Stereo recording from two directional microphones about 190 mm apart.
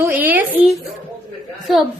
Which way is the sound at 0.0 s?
10° right (ahead or behind).